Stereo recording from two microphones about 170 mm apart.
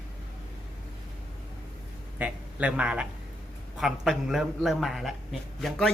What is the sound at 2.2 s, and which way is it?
Speech, 5° right (ahead or behind).